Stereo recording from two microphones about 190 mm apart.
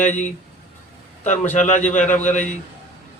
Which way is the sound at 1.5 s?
40° left (ahead or behind).